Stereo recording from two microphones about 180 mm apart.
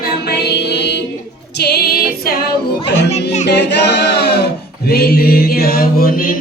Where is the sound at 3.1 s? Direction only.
40° left (ahead or behind).